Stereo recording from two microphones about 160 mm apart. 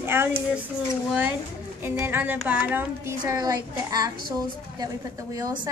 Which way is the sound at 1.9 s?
15° right (ahead or behind).